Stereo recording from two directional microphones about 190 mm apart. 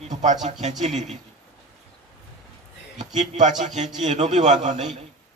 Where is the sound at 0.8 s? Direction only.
40° right (ahead or behind).